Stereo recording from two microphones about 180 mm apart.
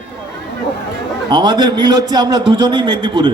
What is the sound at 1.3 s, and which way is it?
A man's voice, 25° right (ahead or behind).